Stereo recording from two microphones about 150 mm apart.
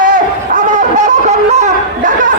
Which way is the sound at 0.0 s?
60° right (ahead or behind).